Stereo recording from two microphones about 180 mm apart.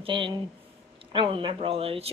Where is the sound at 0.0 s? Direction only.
30° right (ahead or behind).